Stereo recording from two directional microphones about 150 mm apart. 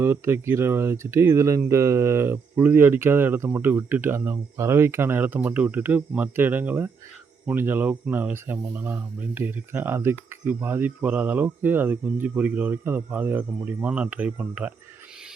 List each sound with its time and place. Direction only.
0.0 s speech: 15° right (ahead or behind)